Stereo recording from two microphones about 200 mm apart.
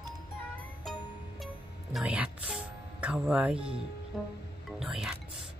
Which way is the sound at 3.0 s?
5° right (ahead or behind).